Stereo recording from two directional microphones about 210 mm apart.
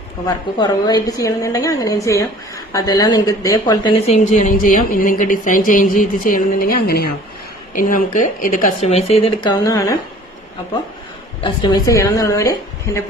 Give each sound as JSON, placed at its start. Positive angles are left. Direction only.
{"t": 0.3, "sound": "a woman's voice", "side_deg": 20}
{"t": 4.0, "sound": "speech", "side_deg": 35}
{"t": 11.3, "sound": "a woman's voice", "side_deg": 25}